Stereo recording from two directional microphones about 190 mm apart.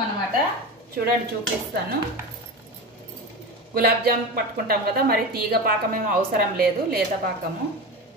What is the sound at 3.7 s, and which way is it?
A woman's voice, 50° right (ahead or behind).